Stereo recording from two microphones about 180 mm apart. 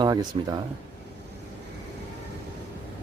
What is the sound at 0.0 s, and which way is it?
Speech, 25° right (ahead or behind).